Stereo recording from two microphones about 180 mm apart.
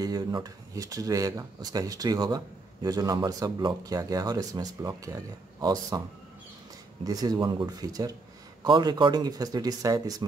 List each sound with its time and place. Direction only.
0.0 s speech: 20° right (ahead or behind)
7.1 s speech: 20° right (ahead or behind)